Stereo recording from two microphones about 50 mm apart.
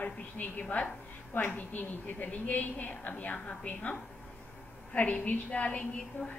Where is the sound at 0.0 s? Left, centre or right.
Left.